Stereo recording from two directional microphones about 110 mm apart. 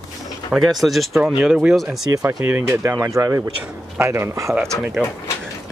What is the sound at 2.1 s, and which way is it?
Speech, 20° right (ahead or behind).